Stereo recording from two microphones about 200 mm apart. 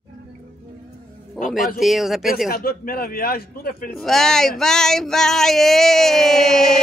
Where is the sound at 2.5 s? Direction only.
45° left (ahead or behind).